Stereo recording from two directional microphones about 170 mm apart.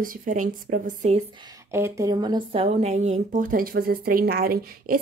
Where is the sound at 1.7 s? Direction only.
15° right (ahead or behind); by 4.9 s 60° right (ahead or behind).